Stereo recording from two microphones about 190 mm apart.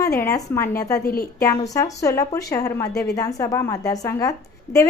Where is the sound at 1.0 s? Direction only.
50° left (ahead or behind).